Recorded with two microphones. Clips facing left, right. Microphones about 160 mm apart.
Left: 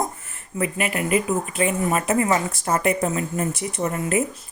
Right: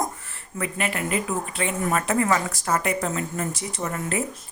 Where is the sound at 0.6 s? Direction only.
15° left (ahead or behind).